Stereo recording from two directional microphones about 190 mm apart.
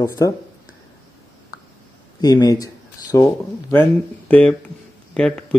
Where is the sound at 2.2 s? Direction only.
20° left (ahead or behind).